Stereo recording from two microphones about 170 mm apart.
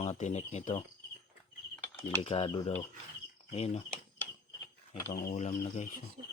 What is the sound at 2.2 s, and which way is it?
Speech, 35° left (ahead or behind).